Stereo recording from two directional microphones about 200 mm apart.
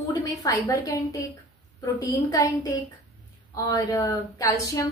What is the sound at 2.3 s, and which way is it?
A woman's voice, 15° left (ahead or behind).